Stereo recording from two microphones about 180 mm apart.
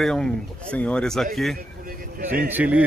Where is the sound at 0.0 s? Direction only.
5° left (ahead or behind).